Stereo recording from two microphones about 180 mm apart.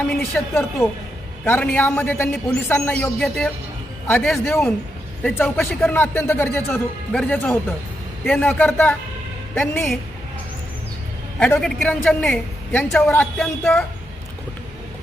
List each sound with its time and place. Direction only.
0.2 s a woman's voice: 15° left (ahead or behind)
11.3 s a woman's voice: 5° left (ahead or behind)